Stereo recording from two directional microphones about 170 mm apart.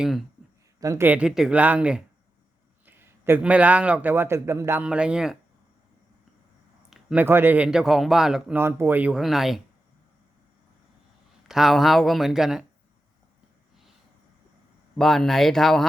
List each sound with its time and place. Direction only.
0.0 s speech: centre (ahead or behind)
0.8 s a man's voice: 15° right (ahead or behind)
6.9 s speech: 10° right (ahead or behind)
11.4 s speech: centre (ahead or behind)
14.9 s speech: centre (ahead or behind)